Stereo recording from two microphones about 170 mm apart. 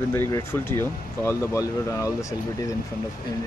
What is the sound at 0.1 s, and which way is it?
Speech, 15° left (ahead or behind).